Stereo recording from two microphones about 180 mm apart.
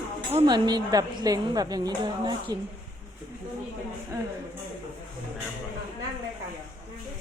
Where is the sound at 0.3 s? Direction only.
25° right (ahead or behind).